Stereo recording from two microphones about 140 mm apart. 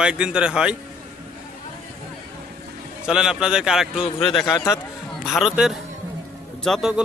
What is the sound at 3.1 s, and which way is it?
A man's voice, 5° right (ahead or behind).